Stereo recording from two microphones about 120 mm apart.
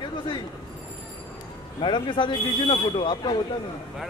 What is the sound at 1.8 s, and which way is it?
Speech, 40° left (ahead or behind).